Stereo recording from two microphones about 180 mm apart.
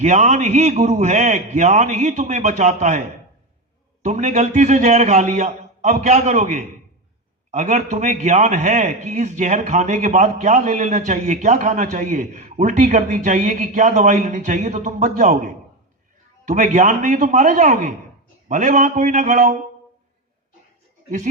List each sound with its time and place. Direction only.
0.0 s a man's voice: 40° right (ahead or behind)
4.0 s a man's voice: 40° right (ahead or behind)
16.5 s a man's voice: 40° right (ahead or behind)